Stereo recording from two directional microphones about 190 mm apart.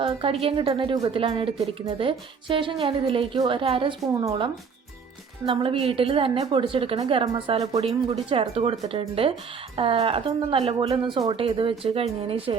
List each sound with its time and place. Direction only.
0.0 s a woman's voice: 30° right (ahead or behind)